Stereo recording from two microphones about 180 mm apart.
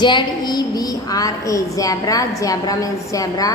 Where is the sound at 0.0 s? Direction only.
25° left (ahead or behind).